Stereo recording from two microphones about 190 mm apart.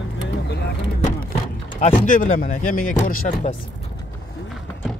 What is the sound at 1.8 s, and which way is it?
Speech, 40° left (ahead or behind).